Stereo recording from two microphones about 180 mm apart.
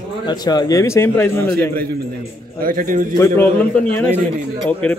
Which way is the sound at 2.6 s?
50° right (ahead or behind).